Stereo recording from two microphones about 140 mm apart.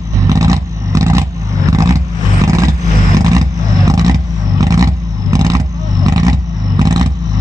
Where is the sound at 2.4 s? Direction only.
25° right (ahead or behind).